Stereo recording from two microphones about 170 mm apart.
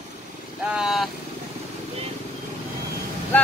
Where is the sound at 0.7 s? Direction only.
5° right (ahead or behind).